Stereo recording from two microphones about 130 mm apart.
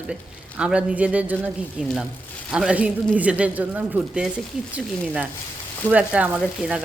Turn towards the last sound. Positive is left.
turn(degrees=-10)  # may be behind; listen again after turning